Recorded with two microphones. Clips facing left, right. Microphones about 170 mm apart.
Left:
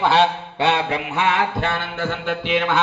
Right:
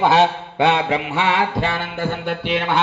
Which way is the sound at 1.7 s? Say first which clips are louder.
Right 1 dB; 15° right (ahead or behind).